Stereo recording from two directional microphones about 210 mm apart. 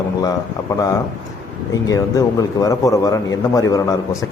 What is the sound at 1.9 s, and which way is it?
A man's voice, 15° left (ahead or behind).